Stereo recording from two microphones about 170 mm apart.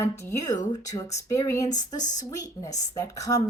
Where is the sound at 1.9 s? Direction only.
45° left (ahead or behind).